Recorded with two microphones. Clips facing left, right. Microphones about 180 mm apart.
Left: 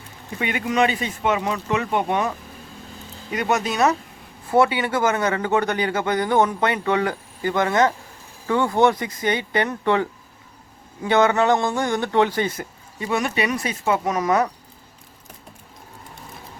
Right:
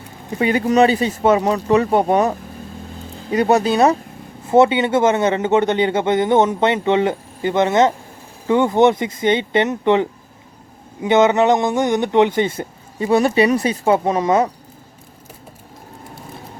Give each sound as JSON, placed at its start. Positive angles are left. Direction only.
{"t": 0.3, "sound": "a man's voice", "side_deg": -35}